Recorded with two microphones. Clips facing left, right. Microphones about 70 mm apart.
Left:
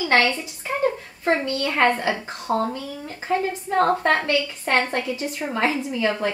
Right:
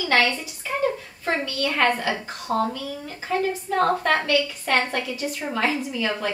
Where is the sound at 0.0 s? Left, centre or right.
Left.